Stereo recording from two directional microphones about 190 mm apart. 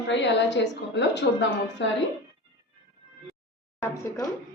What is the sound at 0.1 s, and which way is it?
A woman's voice, 65° left (ahead or behind).